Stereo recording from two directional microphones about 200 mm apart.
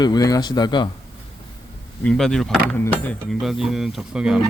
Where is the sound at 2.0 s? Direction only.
5° left (ahead or behind).